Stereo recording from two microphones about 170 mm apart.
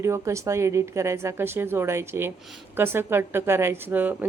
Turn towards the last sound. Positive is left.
turn(degrees=-10)  # may be behind; listen again after turning